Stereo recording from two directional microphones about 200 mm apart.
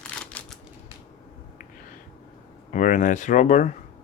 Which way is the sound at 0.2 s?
5° left (ahead or behind).